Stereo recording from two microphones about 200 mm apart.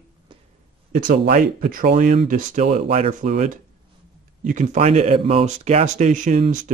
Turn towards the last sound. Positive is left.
turn(degrees=-40)  # may be behind; listen again after turning